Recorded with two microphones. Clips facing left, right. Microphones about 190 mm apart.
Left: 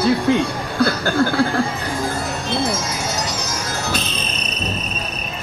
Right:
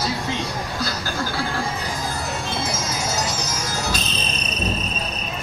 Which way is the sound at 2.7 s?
60° left (ahead or behind).